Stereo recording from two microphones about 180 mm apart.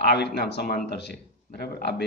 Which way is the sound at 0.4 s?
65° left (ahead or behind).